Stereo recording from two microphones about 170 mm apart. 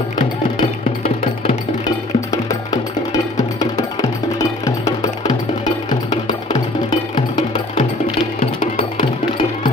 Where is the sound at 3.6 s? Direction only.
20° left (ahead or behind).